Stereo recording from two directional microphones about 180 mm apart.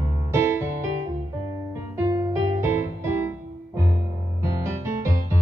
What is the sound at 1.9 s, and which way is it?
Music, 20° right (ahead or behind).